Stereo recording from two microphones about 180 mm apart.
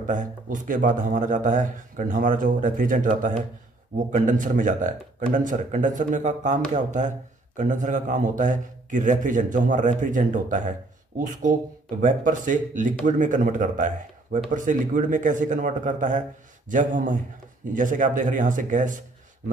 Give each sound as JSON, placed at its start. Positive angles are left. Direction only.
{"t": 0.0, "sound": "a man's voice", "side_deg": -45}
{"t": 12.0, "sound": "a man's voice", "side_deg": -45}